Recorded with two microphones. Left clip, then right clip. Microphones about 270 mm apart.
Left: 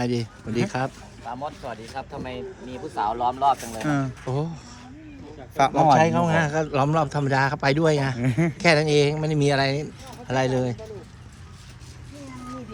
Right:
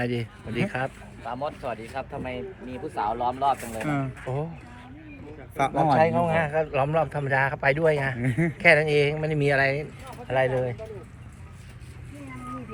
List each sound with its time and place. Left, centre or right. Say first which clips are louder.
0.0 s speech: left 2 dB; centre
1.2 s speech: right 1 dB; centre
3.8 s speech: left 3 dB; left
5.5 s a man's voice: left 4 dB; left